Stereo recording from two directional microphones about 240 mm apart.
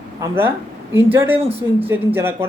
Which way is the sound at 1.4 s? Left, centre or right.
Right.